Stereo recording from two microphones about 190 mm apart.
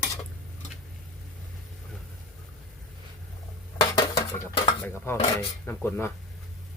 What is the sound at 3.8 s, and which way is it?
Dishes, 20° left (ahead or behind).